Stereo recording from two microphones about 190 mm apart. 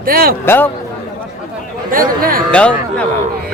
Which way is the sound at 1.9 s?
50° right (ahead or behind).